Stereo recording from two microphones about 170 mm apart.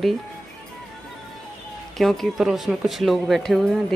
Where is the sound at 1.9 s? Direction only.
Centre (ahead or behind).